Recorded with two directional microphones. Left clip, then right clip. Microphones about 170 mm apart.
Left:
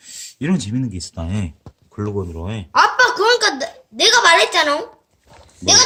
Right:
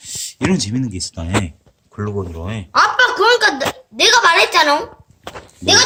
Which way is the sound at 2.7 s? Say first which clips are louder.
Even; 35° left (ahead or behind).